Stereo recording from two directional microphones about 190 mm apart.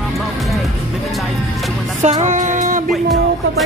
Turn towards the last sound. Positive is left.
turn(degrees=0)  # may be behind; listen again after turning